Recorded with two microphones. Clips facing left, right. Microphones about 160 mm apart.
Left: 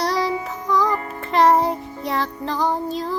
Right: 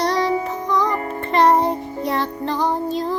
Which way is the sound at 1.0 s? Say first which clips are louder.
Right 5 dB; 40° right (ahead or behind).